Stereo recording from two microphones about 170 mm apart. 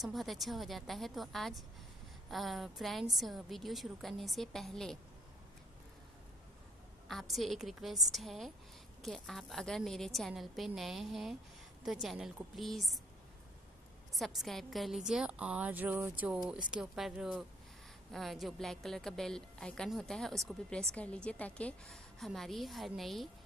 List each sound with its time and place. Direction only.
0.0 s a woman's voice: centre (ahead or behind)
7.1 s a woman's voice: centre (ahead or behind)
14.1 s a woman's voice: centre (ahead or behind)